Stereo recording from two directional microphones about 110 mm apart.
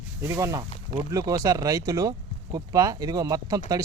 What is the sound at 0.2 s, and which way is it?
Speech, 30° right (ahead or behind).